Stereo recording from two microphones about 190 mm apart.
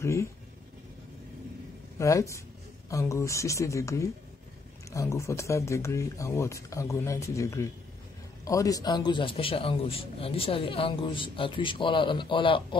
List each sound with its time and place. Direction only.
0.0 s speech: 15° left (ahead or behind)
2.0 s a man's voice: 15° left (ahead or behind)